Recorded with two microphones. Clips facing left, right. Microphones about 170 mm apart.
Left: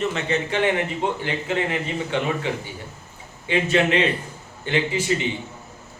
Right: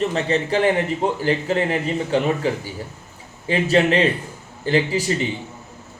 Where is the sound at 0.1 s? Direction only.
35° right (ahead or behind).